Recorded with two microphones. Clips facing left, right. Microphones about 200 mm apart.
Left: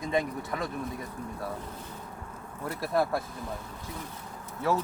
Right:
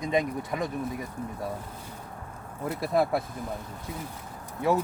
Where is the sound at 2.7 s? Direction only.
15° right (ahead or behind).